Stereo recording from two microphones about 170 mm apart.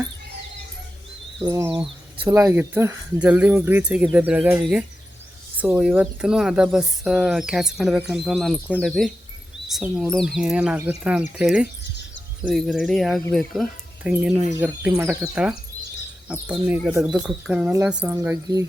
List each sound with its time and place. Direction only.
1.4 s speech: 20° right (ahead or behind)